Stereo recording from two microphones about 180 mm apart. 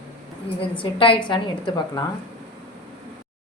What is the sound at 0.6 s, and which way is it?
A woman's voice, 30° left (ahead or behind).